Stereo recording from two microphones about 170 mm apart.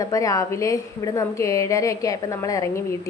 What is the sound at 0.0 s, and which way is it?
A woman's voice, 20° left (ahead or behind).